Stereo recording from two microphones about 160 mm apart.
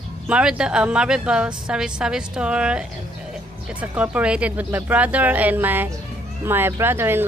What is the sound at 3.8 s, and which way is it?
A woman's voice, 10° right (ahead or behind).